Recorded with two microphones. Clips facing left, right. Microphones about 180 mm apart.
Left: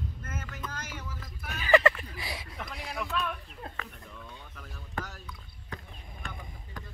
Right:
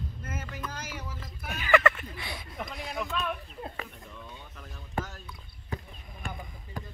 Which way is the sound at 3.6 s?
15° right (ahead or behind).